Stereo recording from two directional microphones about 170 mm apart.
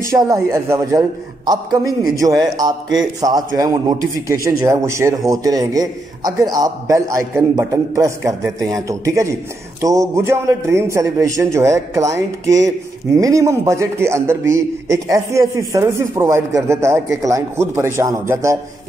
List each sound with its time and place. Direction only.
0.0 s a man's voice: 15° right (ahead or behind)